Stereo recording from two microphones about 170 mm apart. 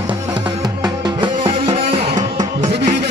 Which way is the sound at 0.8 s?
30° right (ahead or behind).